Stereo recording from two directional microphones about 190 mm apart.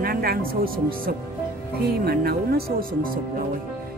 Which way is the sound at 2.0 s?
55° right (ahead or behind).